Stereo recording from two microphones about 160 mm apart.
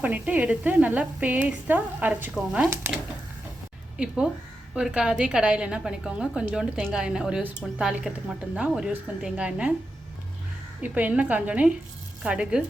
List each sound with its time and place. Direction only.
0.0 s speech: 10° right (ahead or behind)
3.9 s a woman's voice: 5° right (ahead or behind)
10.8 s speech: 10° right (ahead or behind)